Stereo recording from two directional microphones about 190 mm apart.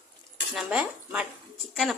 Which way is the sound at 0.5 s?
5° right (ahead or behind).